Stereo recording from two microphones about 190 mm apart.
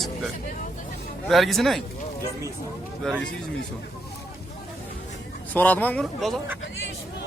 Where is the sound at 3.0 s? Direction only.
Centre (ahead or behind).